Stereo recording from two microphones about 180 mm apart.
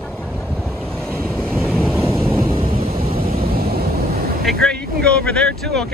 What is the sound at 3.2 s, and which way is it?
Vehicle, 55° right (ahead or behind).